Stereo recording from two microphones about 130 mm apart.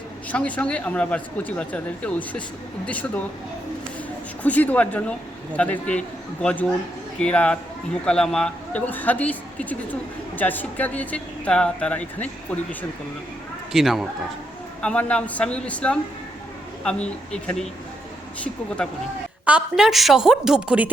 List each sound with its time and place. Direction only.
0.3 s a woman's voice: 10° left (ahead or behind)
4.4 s a woman's voice: 10° left (ahead or behind)
13.7 s a woman's voice: centre (ahead or behind)
19.5 s a woman's voice: 5° right (ahead or behind)